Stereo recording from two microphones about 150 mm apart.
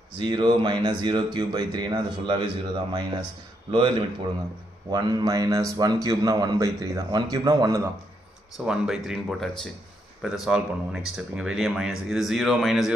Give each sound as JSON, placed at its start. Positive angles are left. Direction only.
{"t": 0.2, "sound": "speech", "side_deg": -30}
{"t": 4.9, "sound": "speech", "side_deg": -25}
{"t": 8.5, "sound": "speech", "side_deg": -5}